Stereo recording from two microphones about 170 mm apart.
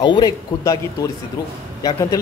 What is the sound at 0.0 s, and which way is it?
Speech, 25° left (ahead or behind).